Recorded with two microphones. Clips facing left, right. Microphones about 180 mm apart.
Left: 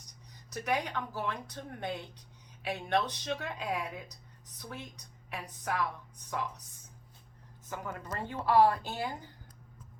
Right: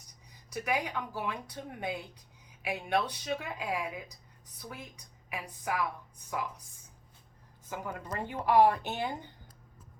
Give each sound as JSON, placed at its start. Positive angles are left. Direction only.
{"t": 0.5, "sound": "speech", "side_deg": -10}
{"t": 7.7, "sound": "speech", "side_deg": -10}